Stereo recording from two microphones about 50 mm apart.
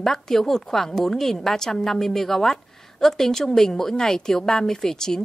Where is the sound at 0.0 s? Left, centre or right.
Centre.